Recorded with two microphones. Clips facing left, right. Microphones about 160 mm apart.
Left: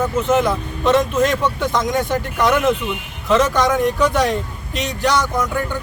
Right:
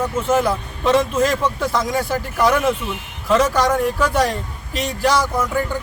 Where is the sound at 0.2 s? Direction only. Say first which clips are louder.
Even; 5° right (ahead or behind).